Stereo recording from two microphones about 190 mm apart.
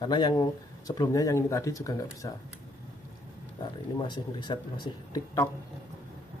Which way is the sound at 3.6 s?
25° left (ahead or behind).